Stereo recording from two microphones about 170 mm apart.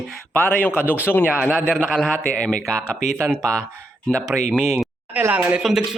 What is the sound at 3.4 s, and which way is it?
Speech, 15° right (ahead or behind).